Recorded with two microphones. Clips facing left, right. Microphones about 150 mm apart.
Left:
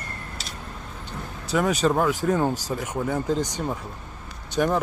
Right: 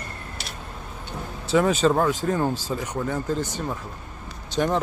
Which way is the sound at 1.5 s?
Centre (ahead or behind).